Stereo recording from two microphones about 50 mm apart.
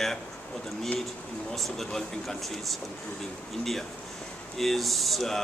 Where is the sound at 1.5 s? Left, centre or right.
Centre.